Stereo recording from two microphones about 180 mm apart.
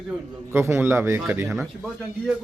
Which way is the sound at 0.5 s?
15° right (ahead or behind).